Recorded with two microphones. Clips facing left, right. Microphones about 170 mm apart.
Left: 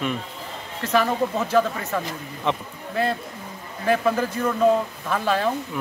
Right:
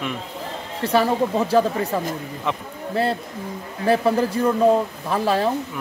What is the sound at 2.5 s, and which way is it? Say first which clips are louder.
Speech: left 2 dB; 5° right (ahead or behind).